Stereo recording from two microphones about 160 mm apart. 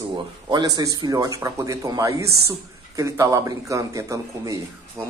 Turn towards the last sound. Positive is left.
turn(degrees=-20)  # may be behind; listen again after turning